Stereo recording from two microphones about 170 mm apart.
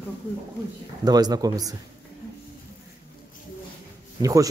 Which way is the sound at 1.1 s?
25° right (ahead or behind).